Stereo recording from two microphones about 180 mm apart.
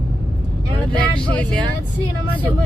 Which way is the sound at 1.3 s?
5° left (ahead or behind).